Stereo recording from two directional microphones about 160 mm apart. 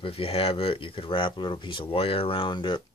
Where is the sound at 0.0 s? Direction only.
35° left (ahead or behind).